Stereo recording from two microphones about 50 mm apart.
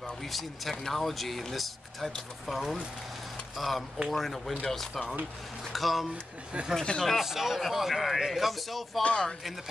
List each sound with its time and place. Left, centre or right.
0.2 s speech: centre
6.8 s speech: centre
7.2 s speech: centre
9.0 s speech: left